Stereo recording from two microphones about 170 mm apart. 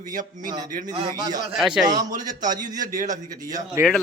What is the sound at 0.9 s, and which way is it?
Speech, 25° right (ahead or behind).